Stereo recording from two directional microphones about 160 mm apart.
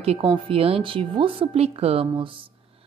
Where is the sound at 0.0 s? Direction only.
35° right (ahead or behind).